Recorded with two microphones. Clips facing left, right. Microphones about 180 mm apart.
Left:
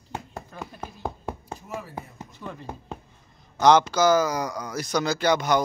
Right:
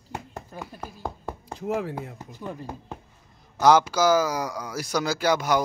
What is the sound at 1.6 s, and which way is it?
Speech, 90° right.